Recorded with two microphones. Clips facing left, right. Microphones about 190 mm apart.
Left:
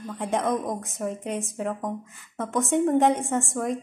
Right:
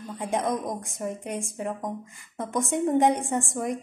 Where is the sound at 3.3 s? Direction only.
15° right (ahead or behind).